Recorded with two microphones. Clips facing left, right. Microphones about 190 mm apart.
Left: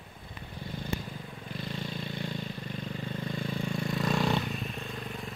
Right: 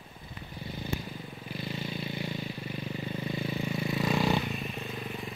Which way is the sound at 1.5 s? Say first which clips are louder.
Right 1 dB; 5° right (ahead or behind).